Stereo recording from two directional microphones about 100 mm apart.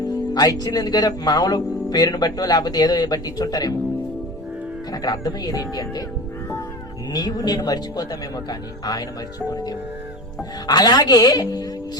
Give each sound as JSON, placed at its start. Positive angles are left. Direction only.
{"t": 0.0, "sound": "speech", "side_deg": 40}
{"t": 4.9, "sound": "speech", "side_deg": 40}
{"t": 7.1, "sound": "speech", "side_deg": 40}